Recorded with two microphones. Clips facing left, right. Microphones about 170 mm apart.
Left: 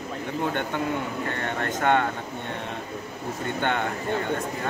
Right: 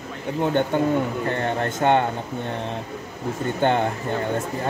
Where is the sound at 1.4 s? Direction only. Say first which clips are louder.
Right 4 dB; 30° right (ahead or behind).